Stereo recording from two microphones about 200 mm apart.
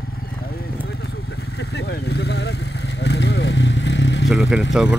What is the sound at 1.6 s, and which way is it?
Vehicle, 55° left (ahead or behind).